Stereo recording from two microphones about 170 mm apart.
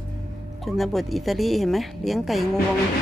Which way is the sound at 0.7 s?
Centre (ahead or behind).